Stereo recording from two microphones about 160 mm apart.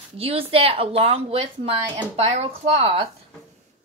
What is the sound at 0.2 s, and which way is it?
A woman's voice, 35° right (ahead or behind).